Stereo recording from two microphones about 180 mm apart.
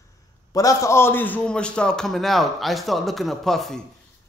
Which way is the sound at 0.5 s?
15° left (ahead or behind).